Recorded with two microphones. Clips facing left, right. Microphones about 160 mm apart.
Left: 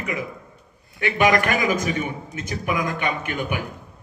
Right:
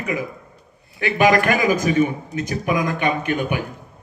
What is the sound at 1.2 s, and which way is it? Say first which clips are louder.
A man's voice: right 3 dB; 35° right (ahead or behind).